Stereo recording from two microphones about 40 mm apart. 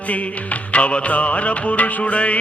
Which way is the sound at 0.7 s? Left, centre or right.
Left.